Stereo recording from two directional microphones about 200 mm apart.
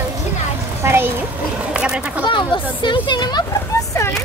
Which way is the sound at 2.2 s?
25° left (ahead or behind).